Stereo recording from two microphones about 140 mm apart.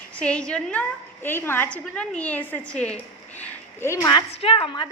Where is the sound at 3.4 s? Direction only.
15° left (ahead or behind).